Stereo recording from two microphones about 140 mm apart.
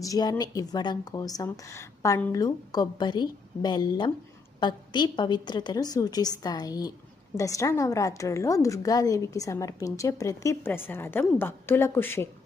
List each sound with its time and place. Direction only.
0.0 s a woman's voice: 25° left (ahead or behind)